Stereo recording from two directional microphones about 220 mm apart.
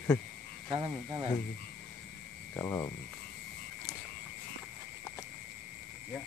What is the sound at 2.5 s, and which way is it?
Speech, 10° left (ahead or behind).